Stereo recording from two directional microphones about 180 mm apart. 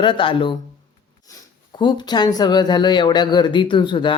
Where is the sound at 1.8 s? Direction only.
25° left (ahead or behind).